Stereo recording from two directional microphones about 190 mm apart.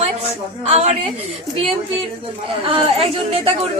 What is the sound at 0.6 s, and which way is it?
Speech, 35° right (ahead or behind).